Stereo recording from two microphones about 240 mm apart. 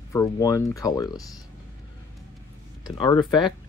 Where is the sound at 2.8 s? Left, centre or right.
Centre.